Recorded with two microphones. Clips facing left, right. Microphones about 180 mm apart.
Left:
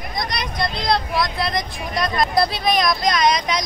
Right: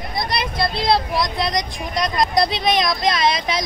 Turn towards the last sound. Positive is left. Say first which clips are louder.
# left 1 dB
turn(degrees=-25)  # may be behind; listen again after turning